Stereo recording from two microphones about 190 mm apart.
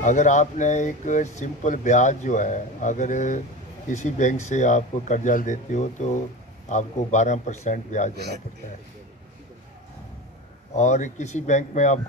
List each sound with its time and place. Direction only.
0.0 s speech: 40° left (ahead or behind)
10.7 s speech: 40° left (ahead or behind)